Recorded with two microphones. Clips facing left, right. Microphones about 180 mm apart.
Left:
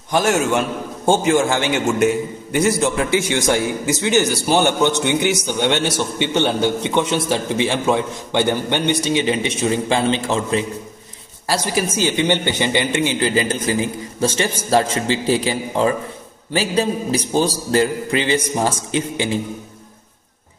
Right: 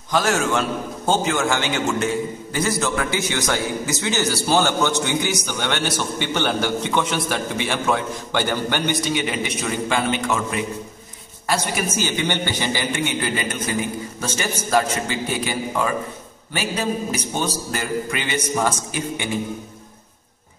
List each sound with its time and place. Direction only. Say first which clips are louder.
0.2 s a man's voice: left 4 dB; 25° left (ahead or behind)
12.3 s a man's voice: left 5 dB; 20° left (ahead or behind)